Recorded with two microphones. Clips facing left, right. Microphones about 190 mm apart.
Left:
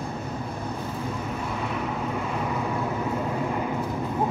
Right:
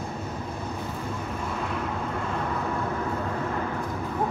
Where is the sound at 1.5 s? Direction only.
5° left (ahead or behind).